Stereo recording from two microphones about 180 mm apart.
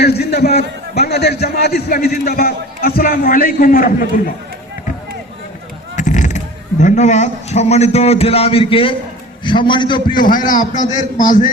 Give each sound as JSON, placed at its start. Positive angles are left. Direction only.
{"t": 0.0, "sound": "a man's voice", "side_deg": 65}
{"t": 6.0, "sound": "a man's voice", "side_deg": 45}
{"t": 10.2, "sound": "a man's voice", "side_deg": 50}